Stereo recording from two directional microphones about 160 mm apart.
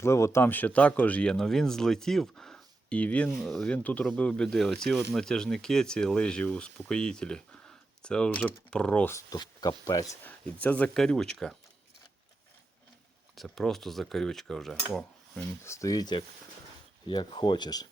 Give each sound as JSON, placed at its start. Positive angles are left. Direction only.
{"t": 0.0, "sound": "speech", "side_deg": 20}
{"t": 10.2, "sound": "speech", "side_deg": 10}
{"t": 13.3, "sound": "speech", "side_deg": 0}
{"t": 15.6, "sound": "speech", "side_deg": 20}